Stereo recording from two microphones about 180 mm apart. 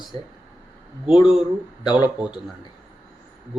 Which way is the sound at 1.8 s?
25° left (ahead or behind).